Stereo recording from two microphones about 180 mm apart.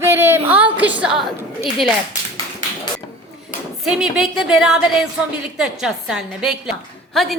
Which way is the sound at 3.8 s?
Centre (ahead or behind).